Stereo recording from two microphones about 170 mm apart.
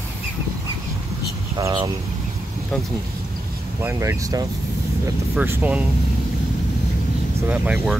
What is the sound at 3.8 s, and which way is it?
Speech, 15° right (ahead or behind).